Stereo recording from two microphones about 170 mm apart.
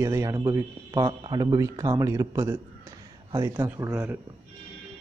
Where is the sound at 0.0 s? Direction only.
20° right (ahead or behind).